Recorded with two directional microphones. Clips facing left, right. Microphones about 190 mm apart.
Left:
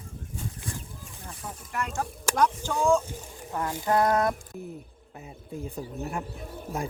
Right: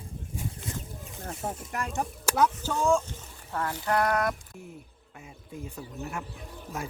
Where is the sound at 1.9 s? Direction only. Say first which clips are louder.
Right 2 dB; 10° right (ahead or behind).